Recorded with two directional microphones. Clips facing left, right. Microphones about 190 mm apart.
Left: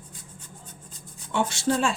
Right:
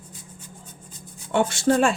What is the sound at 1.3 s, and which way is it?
Speech, 55° right (ahead or behind).